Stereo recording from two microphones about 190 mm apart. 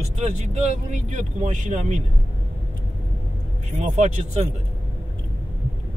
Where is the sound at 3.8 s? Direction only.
40° right (ahead or behind).